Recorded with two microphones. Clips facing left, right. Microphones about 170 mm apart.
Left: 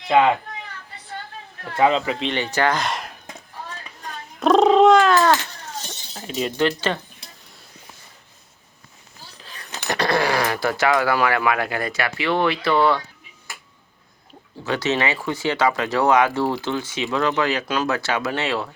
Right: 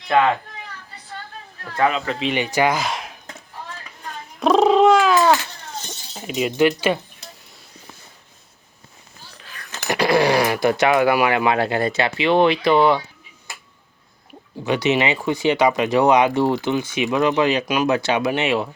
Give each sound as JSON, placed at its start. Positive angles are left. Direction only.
{"t": 0.1, "sound": "a child's voice", "side_deg": 15}
{"t": 2.0, "sound": "speech", "side_deg": 0}
{"t": 2.3, "sound": "speech", "side_deg": -10}
{"t": 4.4, "sound": "cat", "side_deg": 0}
{"t": 6.1, "sound": "speech", "side_deg": -10}
{"t": 9.8, "sound": "speech", "side_deg": -10}
{"t": 14.6, "sound": "speech", "side_deg": -15}